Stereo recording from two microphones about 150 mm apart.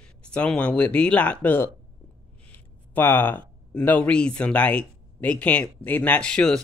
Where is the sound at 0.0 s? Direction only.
5° left (ahead or behind).